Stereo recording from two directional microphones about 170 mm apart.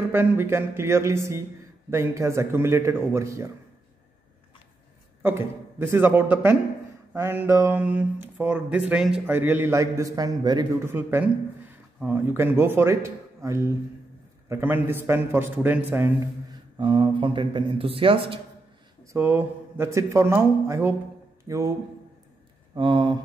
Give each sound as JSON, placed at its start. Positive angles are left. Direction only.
{"t": 0.1, "sound": "speech", "side_deg": -10}
{"t": 5.2, "sound": "speech", "side_deg": -15}
{"t": 16.4, "sound": "speech", "side_deg": -30}
{"t": 19.1, "sound": "speech", "side_deg": -15}
{"t": 22.8, "sound": "speech", "side_deg": -30}